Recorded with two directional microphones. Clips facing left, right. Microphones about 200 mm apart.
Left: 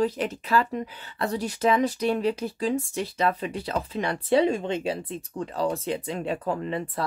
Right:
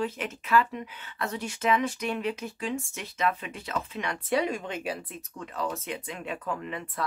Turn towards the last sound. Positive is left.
turn(degrees=35)  # may be behind; listen again after turning